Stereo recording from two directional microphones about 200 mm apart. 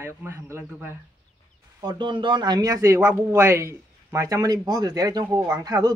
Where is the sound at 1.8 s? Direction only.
25° right (ahead or behind).